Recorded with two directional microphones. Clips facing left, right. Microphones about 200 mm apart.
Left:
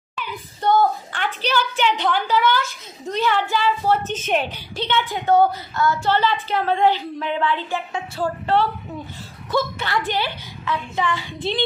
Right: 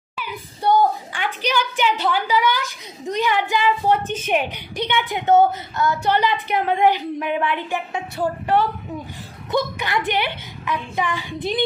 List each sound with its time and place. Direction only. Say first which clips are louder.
0.2 s a woman's voice: even; 10° right (ahead or behind)